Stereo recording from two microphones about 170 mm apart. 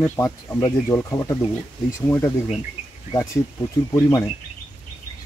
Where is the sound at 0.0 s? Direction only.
15° left (ahead or behind).